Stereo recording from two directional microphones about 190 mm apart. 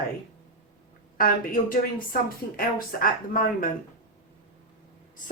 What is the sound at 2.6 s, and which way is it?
A woman's voice, 50° left (ahead or behind).